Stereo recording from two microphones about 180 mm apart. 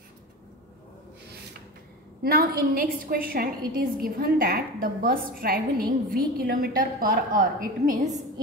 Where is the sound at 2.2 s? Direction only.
55° right (ahead or behind).